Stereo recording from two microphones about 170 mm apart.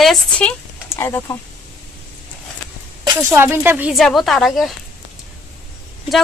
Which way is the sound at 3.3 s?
10° right (ahead or behind).